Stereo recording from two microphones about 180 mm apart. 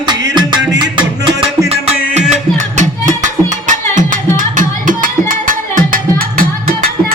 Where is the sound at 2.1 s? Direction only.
40° right (ahead or behind).